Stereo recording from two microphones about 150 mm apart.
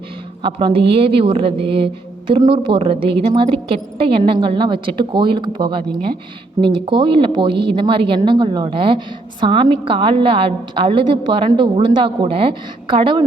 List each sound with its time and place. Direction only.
0.4 s speech: 35° right (ahead or behind)